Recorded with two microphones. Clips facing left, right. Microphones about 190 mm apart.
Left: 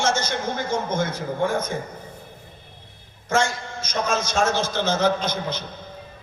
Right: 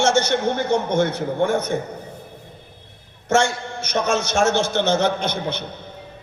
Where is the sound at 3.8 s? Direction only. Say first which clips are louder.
Right 3 dB; 65° right (ahead or behind).